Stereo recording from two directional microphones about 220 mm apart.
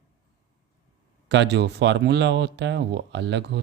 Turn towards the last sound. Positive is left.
turn(degrees=-50)  # may be behind; listen again after turning